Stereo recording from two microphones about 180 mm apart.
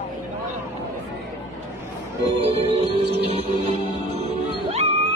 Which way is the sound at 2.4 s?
30° right (ahead or behind).